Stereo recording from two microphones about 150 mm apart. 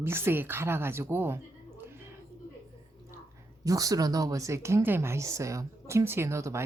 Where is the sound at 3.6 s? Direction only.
20° right (ahead or behind).